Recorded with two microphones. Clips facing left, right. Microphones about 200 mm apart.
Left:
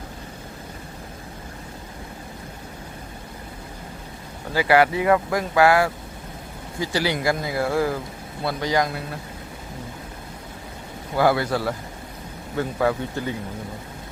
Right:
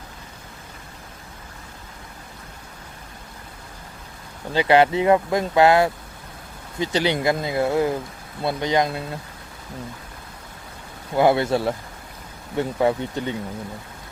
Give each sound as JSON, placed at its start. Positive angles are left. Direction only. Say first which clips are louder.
{"t": 4.5, "sound": "speech", "louder": "right 2 dB", "side_deg": -20}
{"t": 11.2, "sound": "speech", "louder": "right 2 dB", "side_deg": -25}